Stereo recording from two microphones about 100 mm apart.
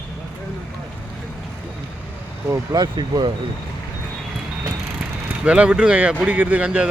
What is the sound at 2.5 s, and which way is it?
Speech, 40° right (ahead or behind).